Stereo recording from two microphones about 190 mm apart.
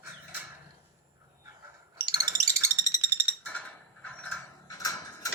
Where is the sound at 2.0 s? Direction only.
20° right (ahead or behind).